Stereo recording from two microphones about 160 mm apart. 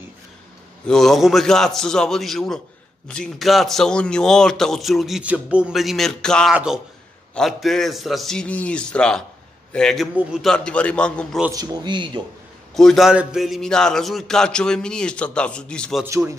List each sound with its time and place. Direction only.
0.8 s a man's voice: 5° left (ahead or behind)
11.5 s a man's voice: 25° right (ahead or behind)
12.7 s a man's voice: centre (ahead or behind)